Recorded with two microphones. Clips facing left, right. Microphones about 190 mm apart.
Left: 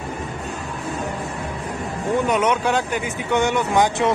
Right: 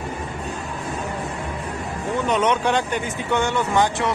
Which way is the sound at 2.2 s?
10° left (ahead or behind).